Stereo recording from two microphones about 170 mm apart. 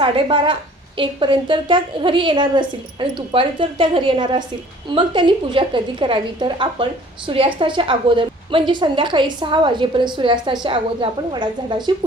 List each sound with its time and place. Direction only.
0.0 s a woman's voice: 30° right (ahead or behind)